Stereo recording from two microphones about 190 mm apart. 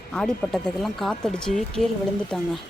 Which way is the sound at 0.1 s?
5° left (ahead or behind).